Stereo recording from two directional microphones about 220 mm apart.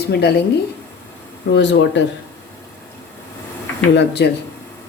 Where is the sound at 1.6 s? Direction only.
55° left (ahead or behind).